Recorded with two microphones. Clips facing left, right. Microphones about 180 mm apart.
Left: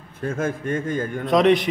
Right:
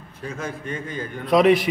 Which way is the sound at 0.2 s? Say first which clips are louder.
Left 6 dB; 50° left (ahead or behind).